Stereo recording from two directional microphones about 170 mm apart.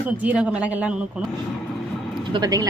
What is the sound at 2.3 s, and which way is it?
Speech, 20° right (ahead or behind).